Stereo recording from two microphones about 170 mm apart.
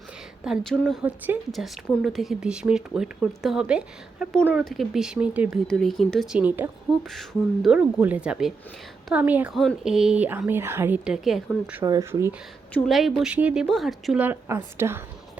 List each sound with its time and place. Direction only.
0.4 s speech: centre (ahead or behind)
1.0 s a woman's voice: 10° right (ahead or behind)
1.5 s speech: centre (ahead or behind)
5.6 s a woman's voice: centre (ahead or behind)
11.8 s speech: 20° right (ahead or behind)
12.7 s speech: centre (ahead or behind); by 15.0 s 15° right (ahead or behind)